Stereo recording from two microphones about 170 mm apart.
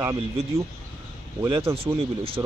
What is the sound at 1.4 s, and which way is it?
Speech, 20° right (ahead or behind).